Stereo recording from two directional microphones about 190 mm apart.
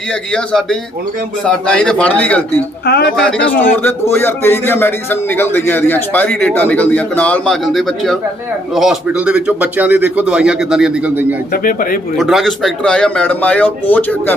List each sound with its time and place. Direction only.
0.1 s speech: 5° left (ahead or behind)
2.8 s speech: 60° left (ahead or behind)
3.2 s a man's voice: 5° left (ahead or behind)
11.5 s speech: 50° left (ahead or behind)
12.1 s speech: centre (ahead or behind)